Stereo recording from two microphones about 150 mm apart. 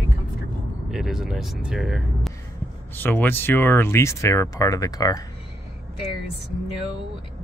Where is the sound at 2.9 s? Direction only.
15° left (ahead or behind).